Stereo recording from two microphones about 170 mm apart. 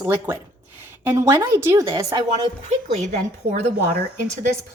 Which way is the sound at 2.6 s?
35° right (ahead or behind).